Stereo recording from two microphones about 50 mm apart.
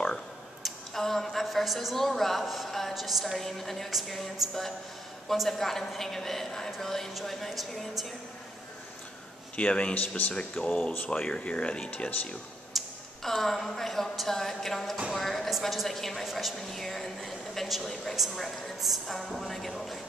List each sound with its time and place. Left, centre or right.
0.7 s a sound: centre
2.9 s a woman's voice: centre
9.6 s speech: left
9.9 s speech: left
10.3 s speech: left
10.7 s speech: left
11.1 s speech: left
12.7 s a woman's voice: centre
15.1 s a sound: centre
15.6 s a woman's voice: centre